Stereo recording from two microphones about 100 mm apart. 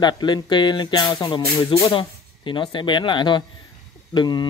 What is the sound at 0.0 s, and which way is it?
Speech, 50° left (ahead or behind).